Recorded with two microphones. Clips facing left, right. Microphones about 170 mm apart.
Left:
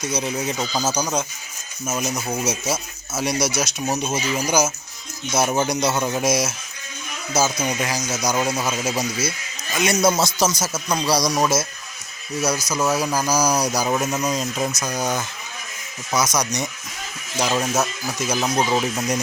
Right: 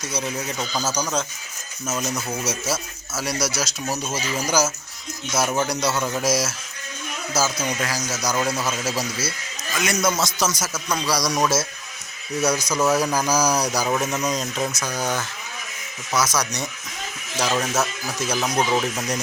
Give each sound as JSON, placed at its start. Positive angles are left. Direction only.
{"t": 0.0, "sound": "a man's voice", "side_deg": 20}
{"t": 7.6, "sound": "a man's voice", "side_deg": 15}
{"t": 11.3, "sound": "speech", "side_deg": 10}
{"t": 12.7, "sound": "speech", "side_deg": 10}